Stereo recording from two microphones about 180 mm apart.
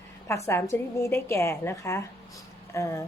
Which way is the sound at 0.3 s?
15° left (ahead or behind).